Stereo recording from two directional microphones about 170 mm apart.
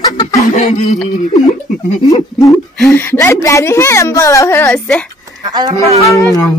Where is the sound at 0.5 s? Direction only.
45° left (ahead or behind).